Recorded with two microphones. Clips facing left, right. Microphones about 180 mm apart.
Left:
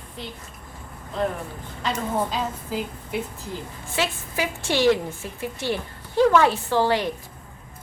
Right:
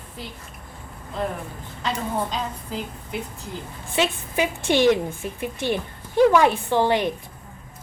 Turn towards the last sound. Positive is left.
turn(degrees=-20)  # may be behind; listen again after turning